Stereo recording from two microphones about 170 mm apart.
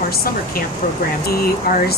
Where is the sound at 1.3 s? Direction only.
65° left (ahead or behind).